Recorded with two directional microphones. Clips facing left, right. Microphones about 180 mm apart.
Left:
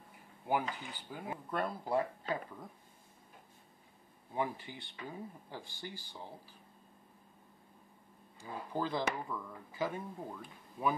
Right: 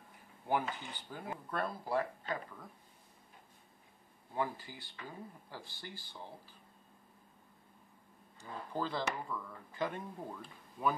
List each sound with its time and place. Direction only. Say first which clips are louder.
0.5 s speech: even; 5° left (ahead or behind); by 2.6 s 25° left (ahead or behind)
4.3 s speech: left 1 dB; 20° left (ahead or behind)
8.4 s speech: left 1 dB; 10° left (ahead or behind)